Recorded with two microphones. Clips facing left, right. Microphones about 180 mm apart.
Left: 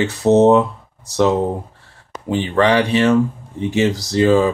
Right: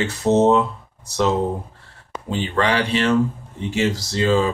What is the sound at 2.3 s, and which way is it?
Speech, 15° left (ahead or behind).